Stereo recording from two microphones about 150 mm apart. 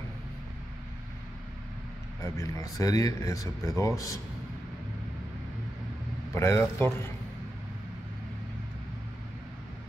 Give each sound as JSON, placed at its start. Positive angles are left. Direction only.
{"t": 2.2, "sound": "speech", "side_deg": 20}
{"t": 6.3, "sound": "a man's voice", "side_deg": 20}